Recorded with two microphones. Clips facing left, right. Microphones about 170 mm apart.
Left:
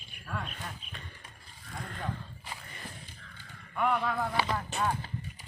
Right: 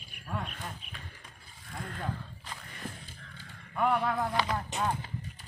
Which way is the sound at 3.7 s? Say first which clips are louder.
Right 1 dB; 35° right (ahead or behind).